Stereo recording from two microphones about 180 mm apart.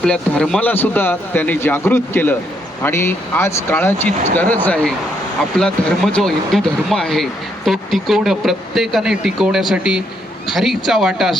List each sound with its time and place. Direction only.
0.0 s a man's voice: 5° left (ahead or behind)